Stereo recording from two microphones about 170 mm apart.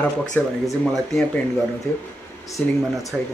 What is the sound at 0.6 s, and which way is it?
Speech, centre (ahead or behind).